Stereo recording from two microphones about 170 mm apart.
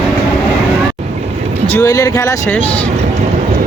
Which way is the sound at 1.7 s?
20° left (ahead or behind).